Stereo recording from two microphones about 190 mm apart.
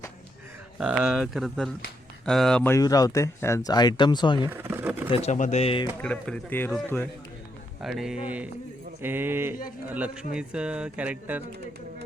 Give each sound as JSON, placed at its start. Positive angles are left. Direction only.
{"t": 0.8, "sound": "speech", "side_deg": -5}
{"t": 2.7, "sound": "speech", "side_deg": 20}
{"t": 4.4, "sound": "a sound", "side_deg": -10}
{"t": 5.1, "sound": "speech", "side_deg": 35}
{"t": 6.0, "sound": "speech", "side_deg": 5}
{"t": 7.8, "sound": "speech", "side_deg": 0}